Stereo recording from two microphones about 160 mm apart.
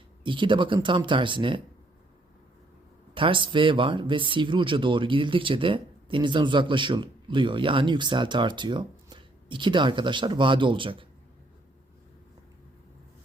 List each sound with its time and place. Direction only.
0.3 s speech: 30° right (ahead or behind)
3.2 s speech: 30° right (ahead or behind)